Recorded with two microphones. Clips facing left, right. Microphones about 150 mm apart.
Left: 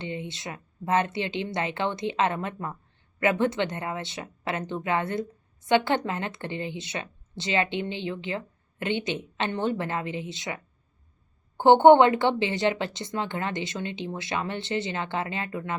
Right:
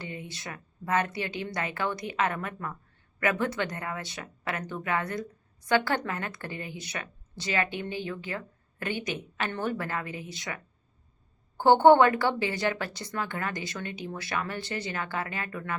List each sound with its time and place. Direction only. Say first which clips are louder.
0.0 s speech: left 5 dB; 25° left (ahead or behind)